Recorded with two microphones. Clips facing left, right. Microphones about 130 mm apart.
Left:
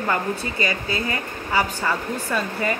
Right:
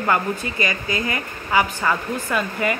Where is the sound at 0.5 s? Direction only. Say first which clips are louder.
Right 1 dB; 35° left (ahead or behind).